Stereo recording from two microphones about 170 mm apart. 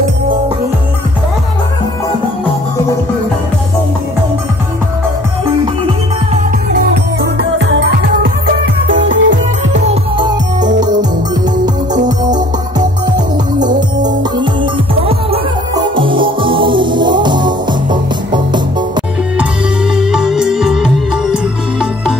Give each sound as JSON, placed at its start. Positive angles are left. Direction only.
{"t": 6.7, "sound": "music", "side_deg": -85}
{"t": 9.8, "sound": "music", "side_deg": -25}
{"t": 12.7, "sound": "music", "side_deg": -25}
{"t": 20.0, "sound": "music", "side_deg": -5}